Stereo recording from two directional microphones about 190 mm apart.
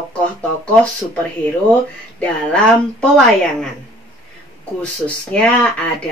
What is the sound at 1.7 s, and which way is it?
Speech, 5° left (ahead or behind).